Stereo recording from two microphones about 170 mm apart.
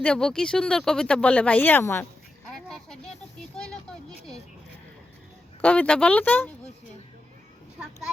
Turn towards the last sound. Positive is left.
turn(degrees=10)  # may be behind; listen again after turning